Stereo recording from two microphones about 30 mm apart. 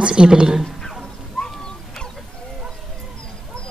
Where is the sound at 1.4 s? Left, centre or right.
Left.